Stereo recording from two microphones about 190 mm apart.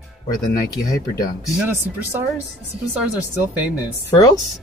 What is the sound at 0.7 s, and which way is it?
Speech, 20° left (ahead or behind).